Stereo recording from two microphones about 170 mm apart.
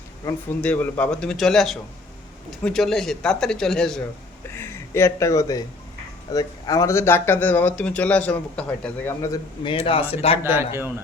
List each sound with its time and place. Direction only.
0.6 s speech: 10° left (ahead or behind)
4.5 s speech: 15° left (ahead or behind)
9.6 s speech: 35° left (ahead or behind)
10.4 s speech: 15° right (ahead or behind)